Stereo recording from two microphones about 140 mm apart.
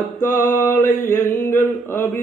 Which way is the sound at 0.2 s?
65° left (ahead or behind).